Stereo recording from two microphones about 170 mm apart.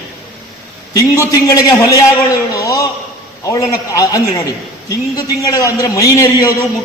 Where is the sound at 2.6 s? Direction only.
20° left (ahead or behind).